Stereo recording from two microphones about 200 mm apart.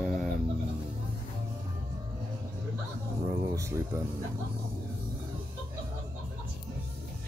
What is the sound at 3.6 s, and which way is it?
Speech, 15° right (ahead or behind).